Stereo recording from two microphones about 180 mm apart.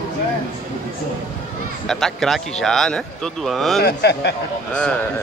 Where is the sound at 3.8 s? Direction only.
65° left (ahead or behind).